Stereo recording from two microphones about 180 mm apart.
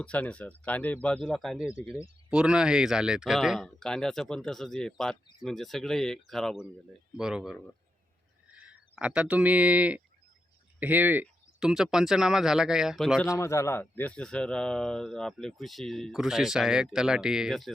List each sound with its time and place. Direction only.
0.0 s a man's voice: 5° left (ahead or behind)
13.2 s a man's voice: 15° left (ahead or behind); by 17.7 s centre (ahead or behind)